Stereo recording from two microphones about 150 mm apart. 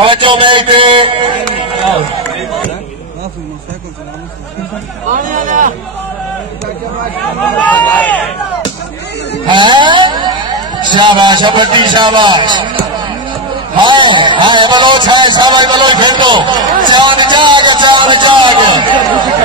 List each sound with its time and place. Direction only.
0.0 s a sound: 35° right (ahead or behind)
5.1 s speech: 60° right (ahead or behind)
7.6 s speech: 10° left (ahead or behind)
9.5 s speech: 30° right (ahead or behind)
13.8 s a man's voice: 30° right (ahead or behind)